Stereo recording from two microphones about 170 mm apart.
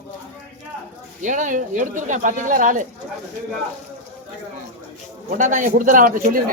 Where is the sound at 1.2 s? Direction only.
45° right (ahead or behind).